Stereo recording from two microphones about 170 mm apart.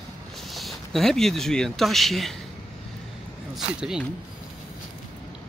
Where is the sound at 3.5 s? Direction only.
5° right (ahead or behind).